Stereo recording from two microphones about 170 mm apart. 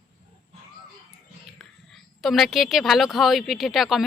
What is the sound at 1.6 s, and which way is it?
Whispering, centre (ahead or behind).